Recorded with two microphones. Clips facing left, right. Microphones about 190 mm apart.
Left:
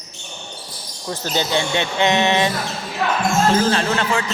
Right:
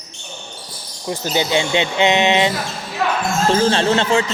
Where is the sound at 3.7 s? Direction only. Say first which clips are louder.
Right 4 dB; 30° right (ahead or behind).